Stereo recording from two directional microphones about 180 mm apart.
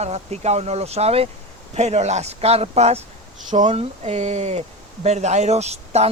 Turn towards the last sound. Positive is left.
turn(degrees=-35)  # may be behind; listen again after turning